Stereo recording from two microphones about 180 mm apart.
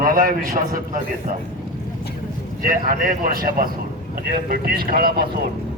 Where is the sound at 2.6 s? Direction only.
50° right (ahead or behind).